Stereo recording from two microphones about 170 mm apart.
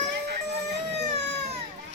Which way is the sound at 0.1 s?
90° right.